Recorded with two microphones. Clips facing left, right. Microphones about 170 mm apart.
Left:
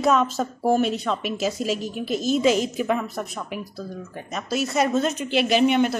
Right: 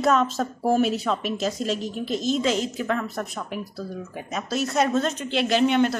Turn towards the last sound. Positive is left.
turn(degrees=10)  # may be behind; listen again after turning